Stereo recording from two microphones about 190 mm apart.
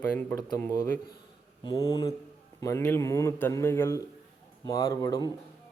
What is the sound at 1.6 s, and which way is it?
Speech, 20° left (ahead or behind).